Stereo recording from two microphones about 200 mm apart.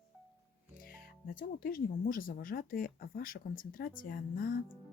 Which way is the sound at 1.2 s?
45° left (ahead or behind).